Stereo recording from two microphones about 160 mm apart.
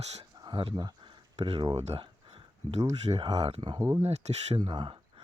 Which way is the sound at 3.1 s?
30° right (ahead or behind).